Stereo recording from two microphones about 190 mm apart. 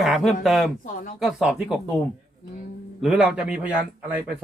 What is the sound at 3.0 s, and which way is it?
Speech, 5° right (ahead or behind).